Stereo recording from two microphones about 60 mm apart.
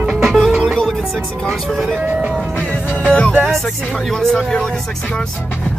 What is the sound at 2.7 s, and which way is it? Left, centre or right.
Music, left.